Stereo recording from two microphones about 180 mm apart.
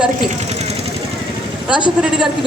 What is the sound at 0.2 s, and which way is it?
Speech, 40° right (ahead or behind).